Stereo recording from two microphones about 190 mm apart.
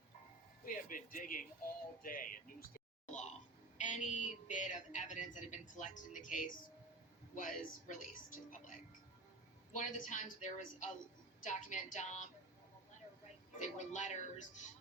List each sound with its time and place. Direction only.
0.6 s a woman's voice: 45° left (ahead or behind)
13.6 s a woman's voice: 40° left (ahead or behind)